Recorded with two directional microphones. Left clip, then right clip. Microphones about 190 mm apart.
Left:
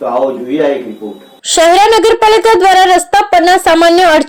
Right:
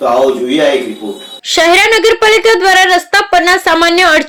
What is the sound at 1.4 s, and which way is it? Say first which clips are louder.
A woman's voice: left 1 dB; 10° left (ahead or behind).